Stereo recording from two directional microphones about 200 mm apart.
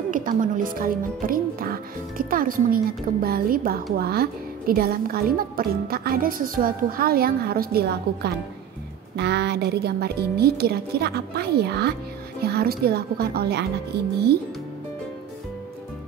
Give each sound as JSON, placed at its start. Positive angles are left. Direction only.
{"t": 0.1, "sound": "speech", "side_deg": -40}